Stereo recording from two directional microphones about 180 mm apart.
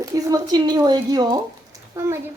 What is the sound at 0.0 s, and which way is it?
A woman's voice, 20° right (ahead or behind).